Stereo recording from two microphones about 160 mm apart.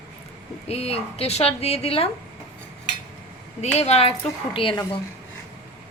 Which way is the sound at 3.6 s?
45° left (ahead or behind).